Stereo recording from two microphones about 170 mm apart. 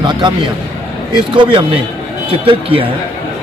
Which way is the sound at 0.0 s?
25° right (ahead or behind).